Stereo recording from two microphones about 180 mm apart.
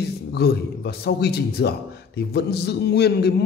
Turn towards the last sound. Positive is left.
turn(degrees=65)  # may be behind; listen again after turning